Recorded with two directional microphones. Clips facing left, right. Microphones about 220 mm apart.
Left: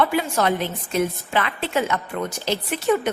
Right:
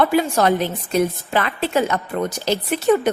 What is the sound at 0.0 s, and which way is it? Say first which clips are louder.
A woman's voice: right 4 dB; 45° right (ahead or behind).